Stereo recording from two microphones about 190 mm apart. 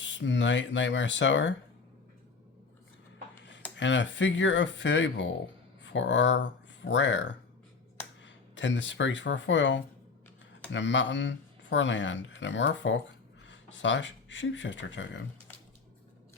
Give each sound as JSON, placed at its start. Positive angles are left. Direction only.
{"t": 0.0, "sound": "speech", "side_deg": 70}
{"t": 3.8, "sound": "speech", "side_deg": 75}